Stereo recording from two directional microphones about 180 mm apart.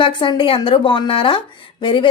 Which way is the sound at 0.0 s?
30° left (ahead or behind).